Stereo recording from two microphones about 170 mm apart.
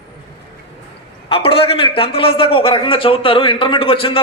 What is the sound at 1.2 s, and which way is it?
A man's voice, 30° left (ahead or behind).